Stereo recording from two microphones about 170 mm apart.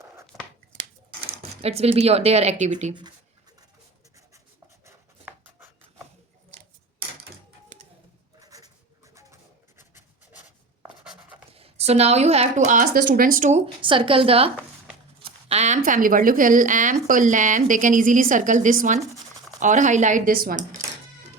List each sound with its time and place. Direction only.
1.6 s a woman's voice: 35° right (ahead or behind)
4.9 s a sound: 15° right (ahead or behind)
8.4 s goat: 20° right (ahead or behind)
9.7 s rub: 15° right (ahead or behind)
11.0 s writing: 5° right (ahead or behind)
11.5 s a woman's voice: 35° right (ahead or behind)
13.8 s a woman's voice: 30° right (ahead or behind); by 20.7 s 60° right (ahead or behind)